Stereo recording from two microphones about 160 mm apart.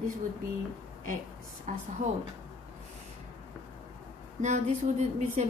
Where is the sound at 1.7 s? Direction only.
50° right (ahead or behind).